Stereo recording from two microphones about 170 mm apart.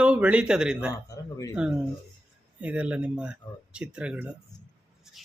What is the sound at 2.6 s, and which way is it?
Speech, 10° right (ahead or behind).